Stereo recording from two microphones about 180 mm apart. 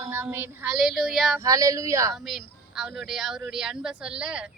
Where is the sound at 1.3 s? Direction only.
20° right (ahead or behind).